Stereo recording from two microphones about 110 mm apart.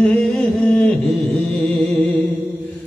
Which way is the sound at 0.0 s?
10° left (ahead or behind).